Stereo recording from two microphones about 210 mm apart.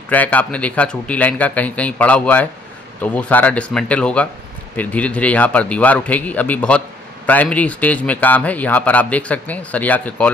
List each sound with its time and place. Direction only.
0.1 s speech: 5° left (ahead or behind)